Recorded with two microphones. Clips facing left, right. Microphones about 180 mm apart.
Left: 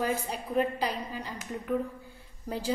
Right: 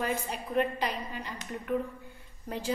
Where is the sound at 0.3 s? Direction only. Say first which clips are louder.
Left 1 dB; 35° left (ahead or behind).